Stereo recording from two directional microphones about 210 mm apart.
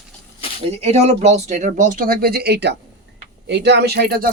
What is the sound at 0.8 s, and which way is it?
Speech, 30° right (ahead or behind).